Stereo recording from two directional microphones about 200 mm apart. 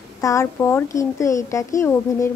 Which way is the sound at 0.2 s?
15° left (ahead or behind).